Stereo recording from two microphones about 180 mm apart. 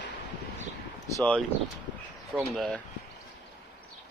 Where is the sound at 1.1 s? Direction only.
5° left (ahead or behind).